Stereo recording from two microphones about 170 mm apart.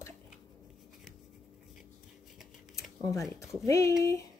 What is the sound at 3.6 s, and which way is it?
Speech, 15° left (ahead or behind).